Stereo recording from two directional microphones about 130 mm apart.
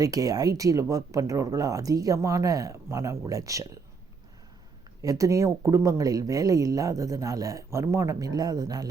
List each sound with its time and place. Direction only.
0.0 s speech: 25° right (ahead or behind)
5.0 s speech: 25° right (ahead or behind)